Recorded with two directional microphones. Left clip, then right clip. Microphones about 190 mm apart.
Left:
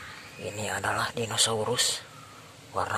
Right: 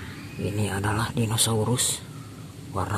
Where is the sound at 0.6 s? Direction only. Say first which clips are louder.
Even; 5° left (ahead or behind).